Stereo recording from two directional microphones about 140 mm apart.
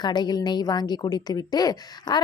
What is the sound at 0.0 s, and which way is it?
A woman's voice, 30° left (ahead or behind).